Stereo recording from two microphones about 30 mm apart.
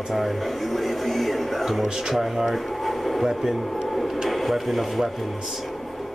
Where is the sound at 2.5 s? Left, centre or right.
Centre.